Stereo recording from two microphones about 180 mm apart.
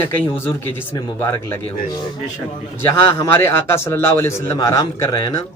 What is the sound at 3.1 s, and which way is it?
A man's voice, 15° left (ahead or behind).